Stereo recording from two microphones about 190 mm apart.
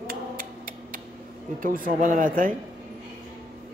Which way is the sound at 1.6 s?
45° right (ahead or behind).